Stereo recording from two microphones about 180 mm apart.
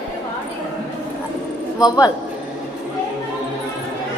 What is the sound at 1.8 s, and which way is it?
Speech, 20° left (ahead or behind).